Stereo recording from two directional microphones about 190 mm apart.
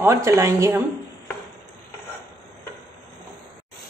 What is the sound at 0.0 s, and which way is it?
Speech, 15° right (ahead or behind).